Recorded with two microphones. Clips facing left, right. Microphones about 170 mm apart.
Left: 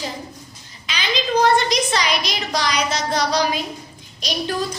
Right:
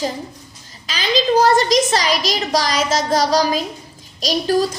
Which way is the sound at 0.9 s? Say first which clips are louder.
Right 6 dB; 40° right (ahead or behind).